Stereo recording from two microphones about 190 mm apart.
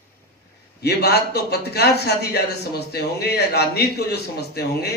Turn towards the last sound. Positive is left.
turn(degrees=55)  # may be behind; listen again after turning